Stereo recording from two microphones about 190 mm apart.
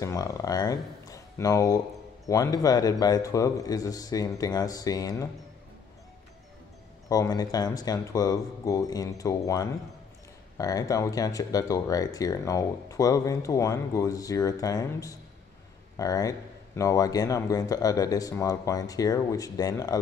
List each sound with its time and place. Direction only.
0.0 s a man's voice: 20° left (ahead or behind)
7.1 s a man's voice: 20° left (ahead or behind)